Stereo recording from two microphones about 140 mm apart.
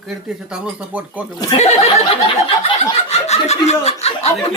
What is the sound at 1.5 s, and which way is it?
Speech, 55° left (ahead or behind).